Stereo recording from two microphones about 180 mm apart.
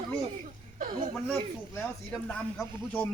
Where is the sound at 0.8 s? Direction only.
50° right (ahead or behind).